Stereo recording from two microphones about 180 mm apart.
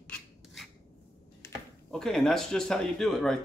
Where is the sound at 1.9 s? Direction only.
5° left (ahead or behind).